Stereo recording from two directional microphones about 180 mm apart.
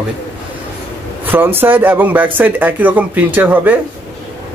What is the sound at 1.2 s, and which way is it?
Speech, 10° right (ahead or behind).